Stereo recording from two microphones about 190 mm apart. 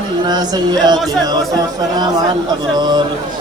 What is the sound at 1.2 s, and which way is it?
Speech, 20° right (ahead or behind).